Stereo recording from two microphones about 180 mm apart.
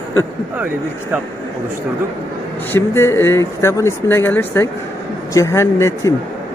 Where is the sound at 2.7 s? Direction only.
15° left (ahead or behind).